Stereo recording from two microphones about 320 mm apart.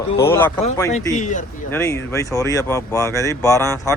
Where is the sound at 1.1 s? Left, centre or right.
Left.